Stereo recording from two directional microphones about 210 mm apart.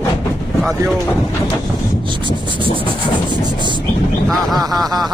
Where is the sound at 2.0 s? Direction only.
25° right (ahead or behind).